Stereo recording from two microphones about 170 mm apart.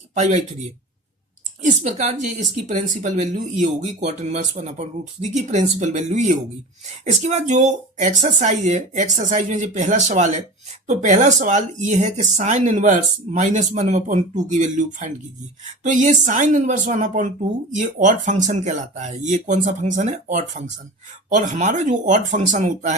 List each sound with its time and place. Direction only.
0.1 s speech: 45° right (ahead or behind)